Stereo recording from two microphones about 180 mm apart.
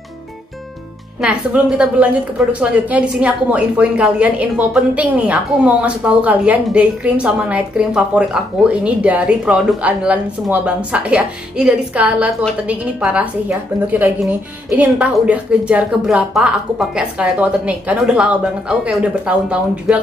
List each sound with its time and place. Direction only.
1.2 s a woman's voice: 5° right (ahead or behind)